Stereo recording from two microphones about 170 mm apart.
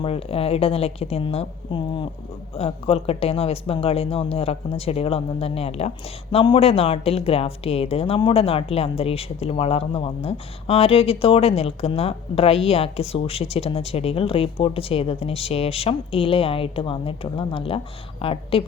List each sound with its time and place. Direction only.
0.0 s speech: 35° left (ahead or behind)